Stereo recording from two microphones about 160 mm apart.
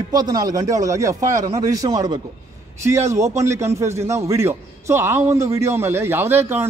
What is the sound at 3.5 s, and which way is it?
A man's voice, 20° right (ahead or behind).